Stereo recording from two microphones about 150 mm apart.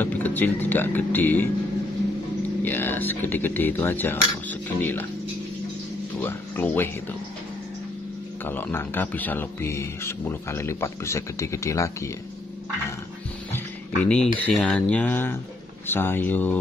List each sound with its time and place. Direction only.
0.0 s a man's voice: 10° left (ahead or behind)
2.6 s a man's voice: 15° left (ahead or behind)
6.1 s speech: 10° left (ahead or behind)
8.5 s a man's voice: 15° left (ahead or behind)
13.9 s a man's voice: 5° left (ahead or behind)